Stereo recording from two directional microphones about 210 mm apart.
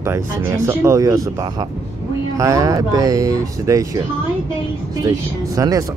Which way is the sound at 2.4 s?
15° right (ahead or behind).